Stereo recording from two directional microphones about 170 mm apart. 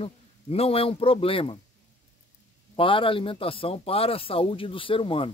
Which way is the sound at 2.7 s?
30° left (ahead or behind).